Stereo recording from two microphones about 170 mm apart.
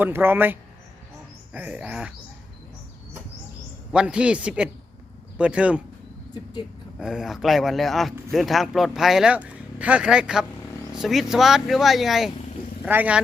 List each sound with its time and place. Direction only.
0.0 s speech: 15° right (ahead or behind)
3.9 s speech: 5° right (ahead or behind)
6.3 s speech: 25° left (ahead or behind)
7.0 s speech: 5° right (ahead or behind)